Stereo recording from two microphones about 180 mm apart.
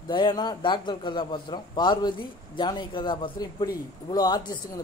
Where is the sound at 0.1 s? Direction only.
25° left (ahead or behind).